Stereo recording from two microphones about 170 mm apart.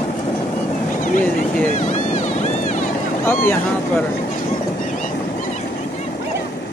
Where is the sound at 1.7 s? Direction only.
45° left (ahead or behind).